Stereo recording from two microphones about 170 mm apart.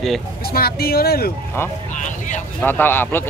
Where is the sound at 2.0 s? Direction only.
45° left (ahead or behind).